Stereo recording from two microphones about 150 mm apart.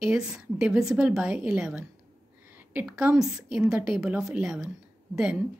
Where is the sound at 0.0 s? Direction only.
5° right (ahead or behind).